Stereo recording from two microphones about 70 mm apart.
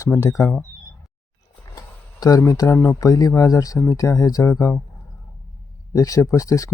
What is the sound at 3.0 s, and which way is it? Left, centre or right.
Speech, left.